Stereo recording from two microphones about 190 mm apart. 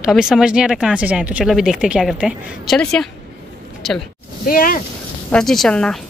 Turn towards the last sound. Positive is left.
turn(degrees=5)  # may be behind; listen again after turning